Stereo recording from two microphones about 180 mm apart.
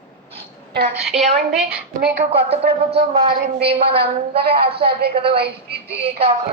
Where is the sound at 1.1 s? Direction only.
40° right (ahead or behind).